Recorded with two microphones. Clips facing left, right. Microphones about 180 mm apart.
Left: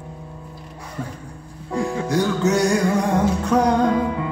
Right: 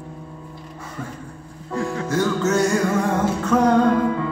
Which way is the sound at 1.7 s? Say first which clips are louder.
Left 1 dB; 15° left (ahead or behind).